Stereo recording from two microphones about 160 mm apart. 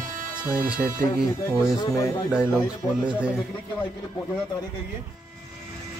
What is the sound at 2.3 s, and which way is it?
Speech, 5° right (ahead or behind).